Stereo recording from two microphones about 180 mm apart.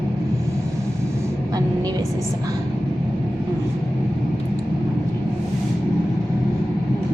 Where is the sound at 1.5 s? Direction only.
20° right (ahead or behind).